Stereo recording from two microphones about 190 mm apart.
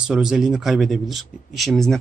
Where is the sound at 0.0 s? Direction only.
5° right (ahead or behind).